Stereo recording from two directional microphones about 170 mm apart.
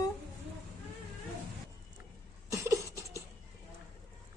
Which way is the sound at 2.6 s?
15° right (ahead or behind).